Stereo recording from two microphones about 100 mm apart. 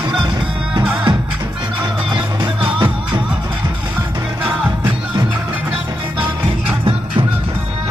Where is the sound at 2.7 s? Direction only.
50° right (ahead or behind).